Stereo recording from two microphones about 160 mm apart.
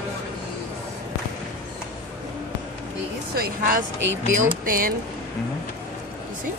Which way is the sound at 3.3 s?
65° right (ahead or behind).